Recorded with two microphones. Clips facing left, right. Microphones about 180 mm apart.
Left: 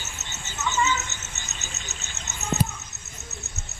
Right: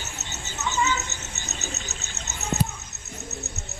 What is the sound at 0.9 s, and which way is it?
Cricket, 35° right (ahead or behind).